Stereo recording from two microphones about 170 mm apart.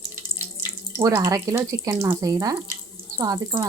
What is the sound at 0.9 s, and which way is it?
Speech, 15° right (ahead or behind).